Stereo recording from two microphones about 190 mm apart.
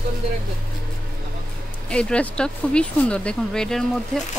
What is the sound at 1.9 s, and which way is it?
Speech, 5° left (ahead or behind).